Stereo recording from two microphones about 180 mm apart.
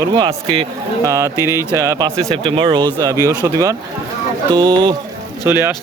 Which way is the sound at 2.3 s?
30° right (ahead or behind).